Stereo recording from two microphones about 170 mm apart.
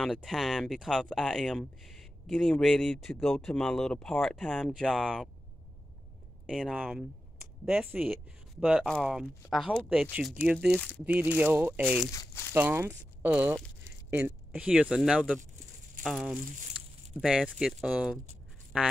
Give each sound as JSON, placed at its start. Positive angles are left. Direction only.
{"t": 0.0, "sound": "speech", "side_deg": 0}
{"t": 6.4, "sound": "speech", "side_deg": -5}
{"t": 12.1, "sound": "speech", "side_deg": 20}
{"t": 12.5, "sound": "speech", "side_deg": -10}